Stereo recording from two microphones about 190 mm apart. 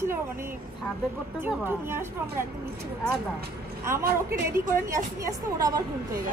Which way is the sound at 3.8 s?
15° right (ahead or behind).